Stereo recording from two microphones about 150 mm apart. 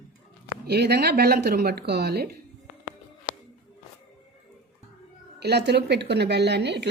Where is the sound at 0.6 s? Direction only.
90° right.